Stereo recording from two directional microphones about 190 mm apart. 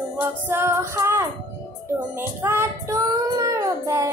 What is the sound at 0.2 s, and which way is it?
Child singing, 10° right (ahead or behind).